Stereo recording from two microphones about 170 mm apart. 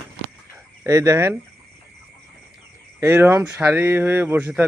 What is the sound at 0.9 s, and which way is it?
Speech, 20° right (ahead or behind).